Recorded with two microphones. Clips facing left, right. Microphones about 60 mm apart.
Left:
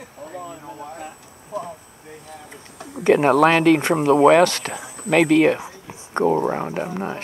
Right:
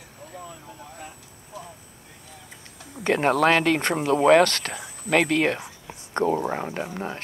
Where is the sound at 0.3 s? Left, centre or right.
Left.